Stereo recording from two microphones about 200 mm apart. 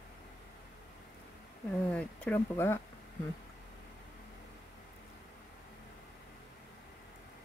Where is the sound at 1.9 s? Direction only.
10° left (ahead or behind).